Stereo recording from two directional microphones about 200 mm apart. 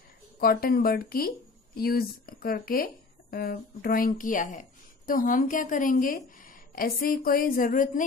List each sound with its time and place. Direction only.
0.4 s a woman's voice: 45° left (ahead or behind)